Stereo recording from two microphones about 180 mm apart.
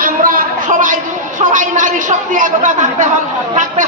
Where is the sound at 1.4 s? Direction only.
45° right (ahead or behind).